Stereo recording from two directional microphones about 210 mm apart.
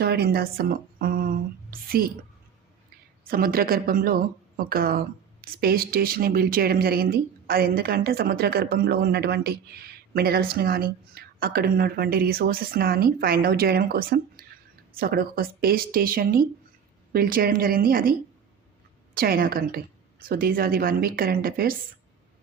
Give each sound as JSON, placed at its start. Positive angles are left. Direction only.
{"t": 0.0, "sound": "a woman's voice", "side_deg": -50}
{"t": 3.2, "sound": "speech", "side_deg": -45}
{"t": 19.1, "sound": "speech", "side_deg": -45}